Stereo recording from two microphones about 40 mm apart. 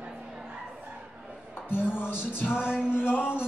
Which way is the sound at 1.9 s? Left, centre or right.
Left.